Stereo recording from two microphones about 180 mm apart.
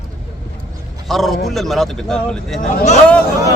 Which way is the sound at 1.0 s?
Centre (ahead or behind).